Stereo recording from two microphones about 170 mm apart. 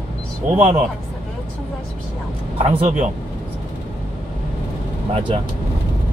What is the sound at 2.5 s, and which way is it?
Speech, 35° right (ahead or behind).